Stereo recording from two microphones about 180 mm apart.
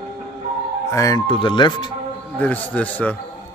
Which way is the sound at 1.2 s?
30° left (ahead or behind).